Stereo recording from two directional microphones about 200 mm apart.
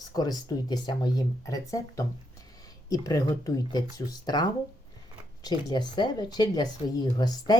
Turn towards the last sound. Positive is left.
turn(degrees=20)  # may be behind; listen again after turning